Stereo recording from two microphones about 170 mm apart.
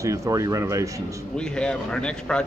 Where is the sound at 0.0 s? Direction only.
20° right (ahead or behind).